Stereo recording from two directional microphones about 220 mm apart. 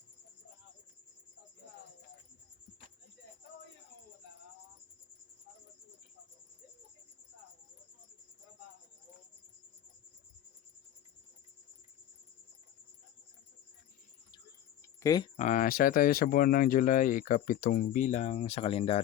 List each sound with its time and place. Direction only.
15.0 s speech: 15° left (ahead or behind)
15.4 s speech: 35° left (ahead or behind)